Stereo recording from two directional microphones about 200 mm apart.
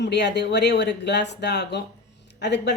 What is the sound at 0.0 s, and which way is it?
A woman's voice, 60° left (ahead or behind).